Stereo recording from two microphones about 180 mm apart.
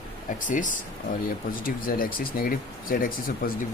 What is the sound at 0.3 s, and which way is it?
Speech, 45° left (ahead or behind).